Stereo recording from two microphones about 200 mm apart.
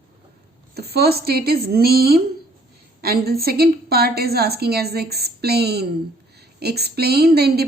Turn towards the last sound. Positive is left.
turn(degrees=-50)  # may be behind; listen again after turning